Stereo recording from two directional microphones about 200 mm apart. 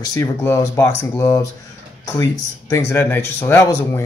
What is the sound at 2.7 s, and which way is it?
Speech, 10° left (ahead or behind).